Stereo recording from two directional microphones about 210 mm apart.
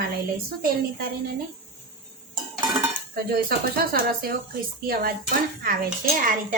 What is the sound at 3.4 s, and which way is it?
Speech, 50° right (ahead or behind).